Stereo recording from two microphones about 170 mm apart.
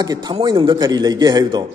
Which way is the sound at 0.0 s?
25° right (ahead or behind).